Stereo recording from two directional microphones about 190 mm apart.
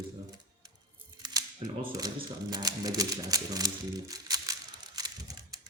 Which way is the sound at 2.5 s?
20° right (ahead or behind).